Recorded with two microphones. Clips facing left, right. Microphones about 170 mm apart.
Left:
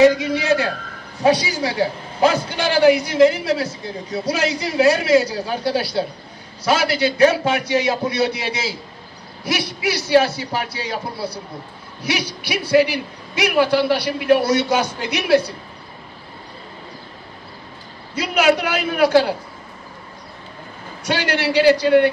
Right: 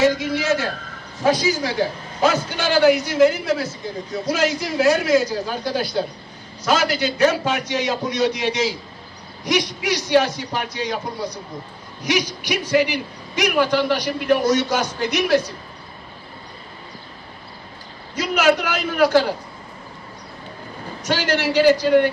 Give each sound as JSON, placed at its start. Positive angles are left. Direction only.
{"t": 0.0, "sound": "a man's voice", "side_deg": 15}
{"t": 18.1, "sound": "a man's voice", "side_deg": 10}
{"t": 21.0, "sound": "a man's voice", "side_deg": 10}